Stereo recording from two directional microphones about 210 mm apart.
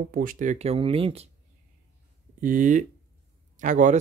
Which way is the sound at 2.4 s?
40° right (ahead or behind).